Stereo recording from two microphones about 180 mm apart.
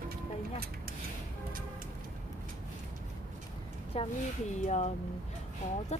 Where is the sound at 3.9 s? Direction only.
35° left (ahead or behind).